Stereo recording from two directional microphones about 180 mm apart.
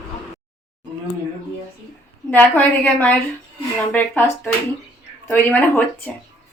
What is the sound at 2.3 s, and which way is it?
A woman's voice, 10° left (ahead or behind).